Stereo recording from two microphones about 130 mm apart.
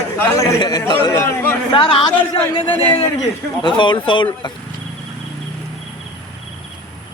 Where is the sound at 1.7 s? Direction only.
45° left (ahead or behind).